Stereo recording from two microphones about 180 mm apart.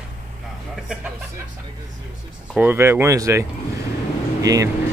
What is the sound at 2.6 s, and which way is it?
Speech, 10° right (ahead or behind).